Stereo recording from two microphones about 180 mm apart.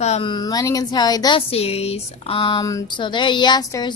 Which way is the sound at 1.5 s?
35° left (ahead or behind).